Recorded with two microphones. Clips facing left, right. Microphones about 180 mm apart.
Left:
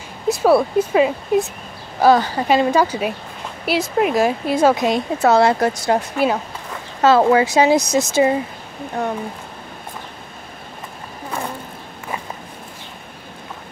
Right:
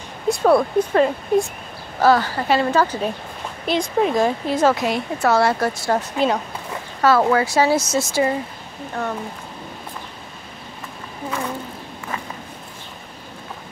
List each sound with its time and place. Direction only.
0.3 s speech: 5° left (ahead or behind)
2.0 s speech: 15° left (ahead or behind)
7.0 s speech: 20° left (ahead or behind)